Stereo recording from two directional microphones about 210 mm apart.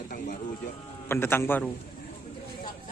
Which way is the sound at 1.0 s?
10° left (ahead or behind).